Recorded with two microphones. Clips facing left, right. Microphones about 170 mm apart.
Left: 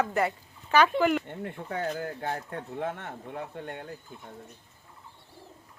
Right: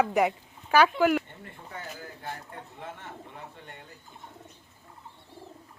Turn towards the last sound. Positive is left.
turn(degrees=55)  # may be behind; listen again after turning